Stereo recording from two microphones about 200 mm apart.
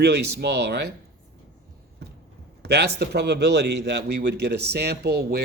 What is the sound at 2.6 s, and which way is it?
A man's voice, 55° right (ahead or behind).